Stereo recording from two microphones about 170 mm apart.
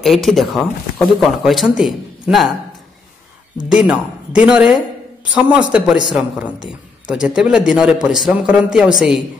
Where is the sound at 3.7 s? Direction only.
5° right (ahead or behind).